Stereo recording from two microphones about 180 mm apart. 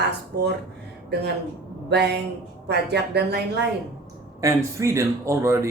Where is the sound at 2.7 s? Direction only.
65° right (ahead or behind).